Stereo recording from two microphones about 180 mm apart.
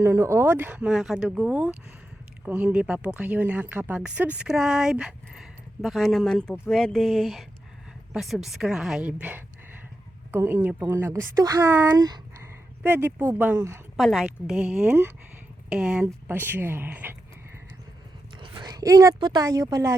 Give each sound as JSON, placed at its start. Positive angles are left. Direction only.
{"t": 0.0, "sound": "speech", "side_deg": -15}
{"t": 13.9, "sound": "speech", "side_deg": 0}
{"t": 18.3, "sound": "speech", "side_deg": -25}